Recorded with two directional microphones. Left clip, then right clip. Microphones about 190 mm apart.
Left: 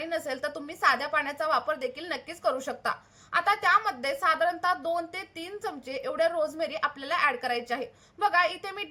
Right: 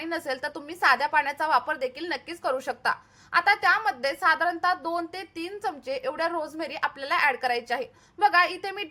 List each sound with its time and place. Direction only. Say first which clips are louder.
0.0 s a woman's voice: right 1 dB; 15° right (ahead or behind)